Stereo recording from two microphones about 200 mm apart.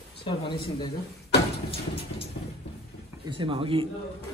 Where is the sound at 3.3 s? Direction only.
25° right (ahead or behind).